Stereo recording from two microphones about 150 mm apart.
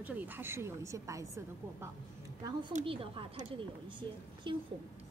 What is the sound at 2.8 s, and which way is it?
Speech, 35° right (ahead or behind).